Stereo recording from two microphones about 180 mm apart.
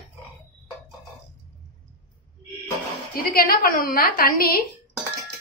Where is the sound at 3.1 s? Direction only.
55° left (ahead or behind).